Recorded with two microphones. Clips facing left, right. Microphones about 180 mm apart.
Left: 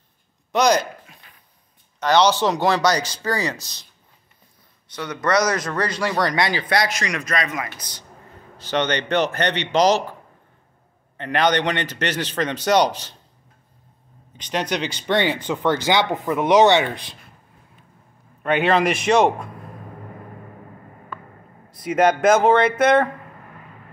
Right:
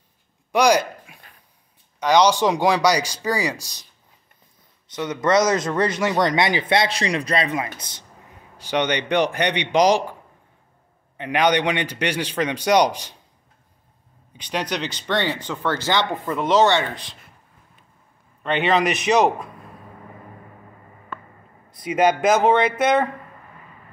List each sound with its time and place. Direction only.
0.5 s a man's voice: 10° right (ahead or behind)
4.9 s speech: 20° right (ahead or behind)
8.5 s a man's voice: 15° right (ahead or behind)
11.1 s a man's voice: 10° right (ahead or behind)
14.3 s speech: 10° right (ahead or behind)
15.0 s speech: 15° left (ahead or behind)
18.4 s speech: 5° left (ahead or behind)
22.0 s speech: 5° right (ahead or behind)